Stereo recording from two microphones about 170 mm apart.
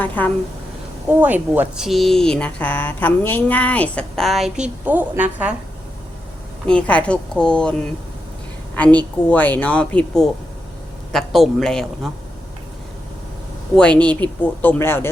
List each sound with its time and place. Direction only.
0.0 s speech: 10° left (ahead or behind)
1.1 s speech: 10° right (ahead or behind)
6.7 s a woman's voice: 5° left (ahead or behind)
13.7 s speech: 5° left (ahead or behind)